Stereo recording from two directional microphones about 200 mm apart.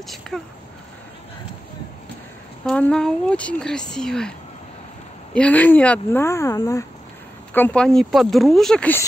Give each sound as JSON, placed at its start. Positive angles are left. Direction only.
{"t": 0.3, "sound": "speech", "side_deg": 0}
{"t": 2.6, "sound": "speech", "side_deg": 5}